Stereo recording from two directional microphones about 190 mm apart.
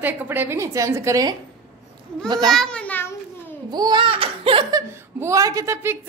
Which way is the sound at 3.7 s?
20° right (ahead or behind).